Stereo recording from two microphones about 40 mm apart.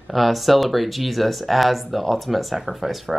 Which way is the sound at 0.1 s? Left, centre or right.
Centre.